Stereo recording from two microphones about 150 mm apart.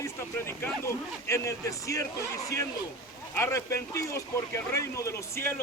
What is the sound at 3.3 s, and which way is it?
Speech, 20° left (ahead or behind).